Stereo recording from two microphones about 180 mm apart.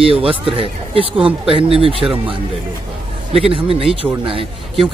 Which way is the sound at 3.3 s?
30° right (ahead or behind).